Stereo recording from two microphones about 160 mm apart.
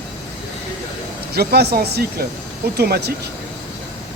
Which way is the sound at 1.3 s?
80° right.